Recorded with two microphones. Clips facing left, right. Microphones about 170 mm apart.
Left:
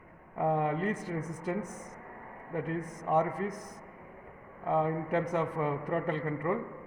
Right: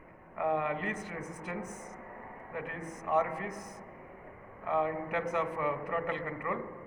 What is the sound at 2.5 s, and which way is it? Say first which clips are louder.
Speech: left 6 dB; 40° left (ahead or behind).